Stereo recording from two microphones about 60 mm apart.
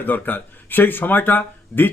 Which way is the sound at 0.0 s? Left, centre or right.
Left.